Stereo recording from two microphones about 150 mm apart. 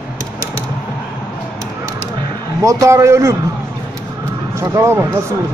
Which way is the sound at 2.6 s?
20° right (ahead or behind).